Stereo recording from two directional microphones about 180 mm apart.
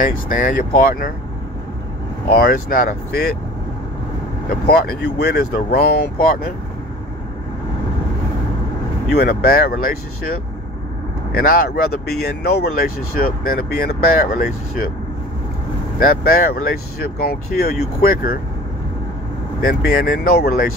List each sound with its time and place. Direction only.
0.0 s speech: 50° left (ahead or behind)
2.3 s speech: 55° left (ahead or behind)
4.6 s speech: 60° left (ahead or behind)
9.1 s speech: 60° left (ahead or behind)
11.3 s speech: 55° left (ahead or behind)
16.0 s speech: 55° left (ahead or behind)
19.6 s speech: 55° left (ahead or behind)